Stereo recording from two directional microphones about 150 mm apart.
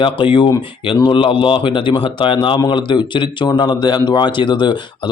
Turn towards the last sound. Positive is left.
turn(degrees=30)  # may be behind; listen again after turning